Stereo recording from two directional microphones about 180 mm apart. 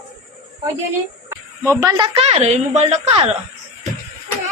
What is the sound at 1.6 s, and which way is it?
Speech, 15° right (ahead or behind).